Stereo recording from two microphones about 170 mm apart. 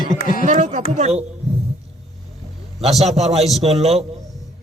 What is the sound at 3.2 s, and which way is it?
Speech, 40° right (ahead or behind).